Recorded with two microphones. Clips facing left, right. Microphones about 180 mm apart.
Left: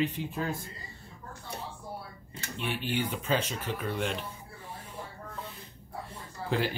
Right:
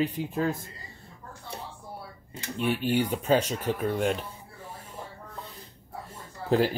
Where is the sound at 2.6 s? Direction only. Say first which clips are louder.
Right 7 dB; 45° right (ahead or behind).